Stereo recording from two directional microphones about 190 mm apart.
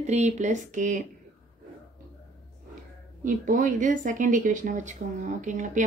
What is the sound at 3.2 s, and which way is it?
Speech, 45° right (ahead or behind).